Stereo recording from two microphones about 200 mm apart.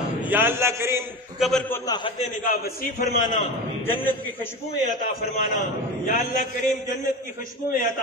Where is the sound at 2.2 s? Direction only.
45° left (ahead or behind).